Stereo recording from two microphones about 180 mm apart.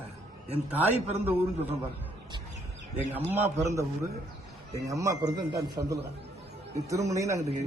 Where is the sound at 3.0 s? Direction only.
10° right (ahead or behind).